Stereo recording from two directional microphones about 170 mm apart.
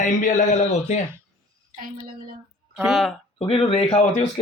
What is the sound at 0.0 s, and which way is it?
Speech, 45° left (ahead or behind).